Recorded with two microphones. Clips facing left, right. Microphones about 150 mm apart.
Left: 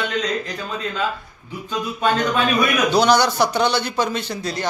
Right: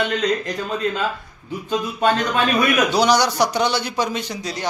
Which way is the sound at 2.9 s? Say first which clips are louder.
Left 1 dB; 10° right (ahead or behind).